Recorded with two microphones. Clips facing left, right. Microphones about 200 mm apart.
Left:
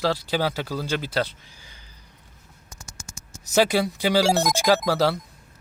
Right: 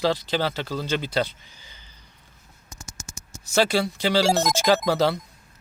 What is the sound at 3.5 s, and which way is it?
Speech, 15° left (ahead or behind).